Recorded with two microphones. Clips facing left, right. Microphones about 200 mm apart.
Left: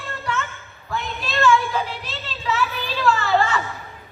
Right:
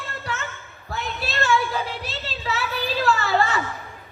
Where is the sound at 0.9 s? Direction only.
40° right (ahead or behind).